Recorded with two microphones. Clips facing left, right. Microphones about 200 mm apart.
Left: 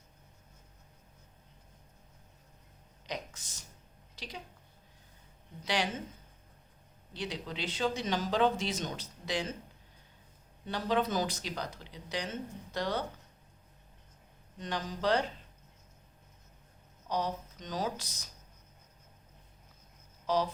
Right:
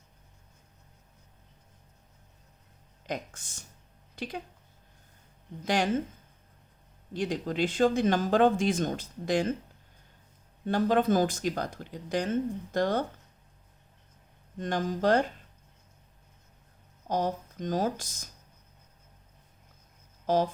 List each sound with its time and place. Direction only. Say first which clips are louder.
3.1 s speech: right 5 dB; 50° right (ahead or behind)
5.6 s speech: right 5 dB; 50° right (ahead or behind)
7.1 s speech: right 8 dB; 50° right (ahead or behind)
10.7 s speech: right 7 dB; 50° right (ahead or behind)
14.6 s speech: right 6 dB; 50° right (ahead or behind)
17.1 s speech: right 5 dB; 50° right (ahead or behind)
20.2 s speech: right 5 dB; 50° right (ahead or behind)